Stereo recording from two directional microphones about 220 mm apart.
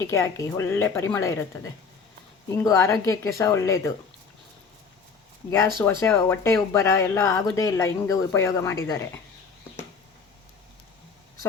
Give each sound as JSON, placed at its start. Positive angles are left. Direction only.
{"t": 0.0, "sound": "speech", "side_deg": 10}
{"t": 5.5, "sound": "speech", "side_deg": 10}